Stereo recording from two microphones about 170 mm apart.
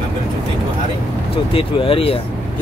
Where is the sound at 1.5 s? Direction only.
30° left (ahead or behind).